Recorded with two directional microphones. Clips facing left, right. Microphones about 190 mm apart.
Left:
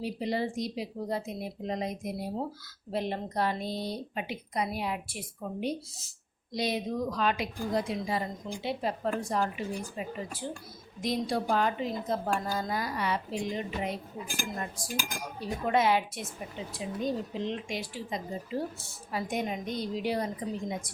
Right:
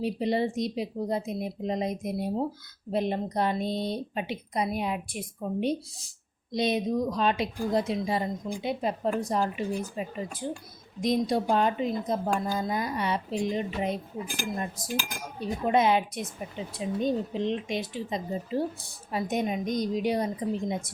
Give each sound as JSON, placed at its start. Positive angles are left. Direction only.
{"t": 0.0, "sound": "a woman's voice", "side_deg": -25}